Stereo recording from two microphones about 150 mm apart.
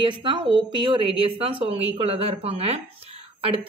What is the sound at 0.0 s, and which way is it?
Speech, 35° right (ahead or behind).